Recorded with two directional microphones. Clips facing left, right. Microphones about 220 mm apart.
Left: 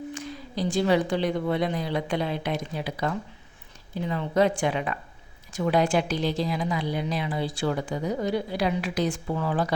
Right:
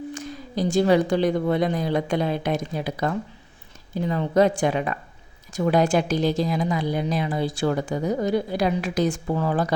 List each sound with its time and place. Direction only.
0.1 s a woman's voice: 45° right (ahead or behind)
4.1 s a woman's voice: 40° right (ahead or behind)